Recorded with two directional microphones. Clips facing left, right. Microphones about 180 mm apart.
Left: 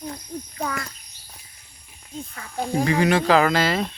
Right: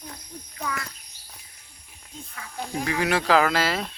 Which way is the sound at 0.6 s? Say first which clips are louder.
Left 3 dB; 40° left (ahead or behind).